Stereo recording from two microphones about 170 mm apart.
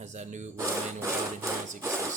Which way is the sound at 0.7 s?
15° right (ahead or behind).